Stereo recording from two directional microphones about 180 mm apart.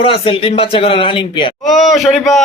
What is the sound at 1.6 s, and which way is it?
Speech, centre (ahead or behind).